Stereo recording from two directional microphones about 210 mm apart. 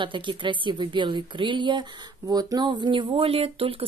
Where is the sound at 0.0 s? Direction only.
25° right (ahead or behind).